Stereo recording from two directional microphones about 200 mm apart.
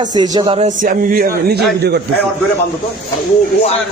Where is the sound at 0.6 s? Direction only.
40° right (ahead or behind).